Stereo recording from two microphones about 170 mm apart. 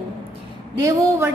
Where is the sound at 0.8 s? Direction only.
20° right (ahead or behind).